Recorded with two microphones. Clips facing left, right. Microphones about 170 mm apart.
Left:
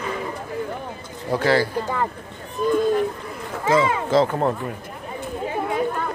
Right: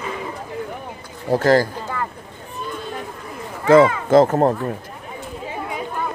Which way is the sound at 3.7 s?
55° right (ahead or behind).